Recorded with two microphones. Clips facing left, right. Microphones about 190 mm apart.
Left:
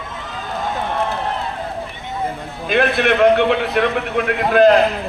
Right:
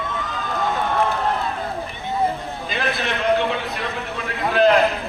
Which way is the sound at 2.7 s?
65° left (ahead or behind).